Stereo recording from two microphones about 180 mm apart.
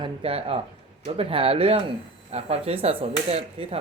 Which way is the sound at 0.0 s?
35° right (ahead or behind).